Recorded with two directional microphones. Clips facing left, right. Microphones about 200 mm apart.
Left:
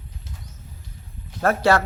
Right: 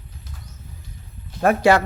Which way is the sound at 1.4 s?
15° right (ahead or behind).